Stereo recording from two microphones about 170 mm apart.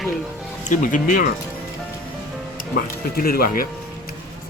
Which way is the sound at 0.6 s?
50° left (ahead or behind).